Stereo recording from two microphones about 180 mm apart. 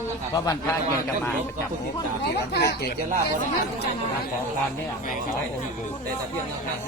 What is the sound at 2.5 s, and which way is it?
Speech, 60° left (ahead or behind).